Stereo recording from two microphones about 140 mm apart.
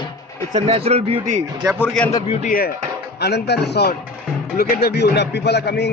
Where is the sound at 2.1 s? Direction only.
50° left (ahead or behind).